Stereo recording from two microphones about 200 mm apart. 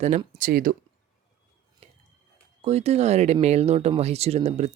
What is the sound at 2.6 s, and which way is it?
Speech, 30° right (ahead or behind).